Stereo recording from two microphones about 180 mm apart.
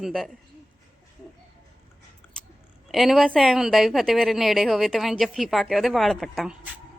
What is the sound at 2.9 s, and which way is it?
A woman's voice, centre (ahead or behind).